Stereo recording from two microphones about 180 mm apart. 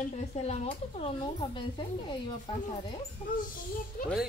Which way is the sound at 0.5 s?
35° left (ahead or behind).